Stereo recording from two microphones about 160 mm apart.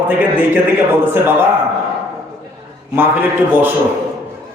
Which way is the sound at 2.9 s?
10° right (ahead or behind).